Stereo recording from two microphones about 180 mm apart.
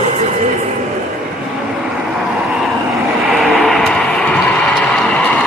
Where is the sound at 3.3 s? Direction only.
Centre (ahead or behind).